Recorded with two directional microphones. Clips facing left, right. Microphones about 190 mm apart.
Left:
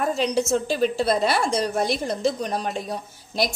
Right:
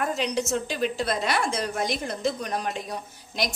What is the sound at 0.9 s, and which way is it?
Speech, 30° left (ahead or behind).